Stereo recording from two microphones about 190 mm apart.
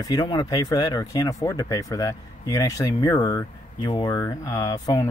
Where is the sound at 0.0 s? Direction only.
20° left (ahead or behind).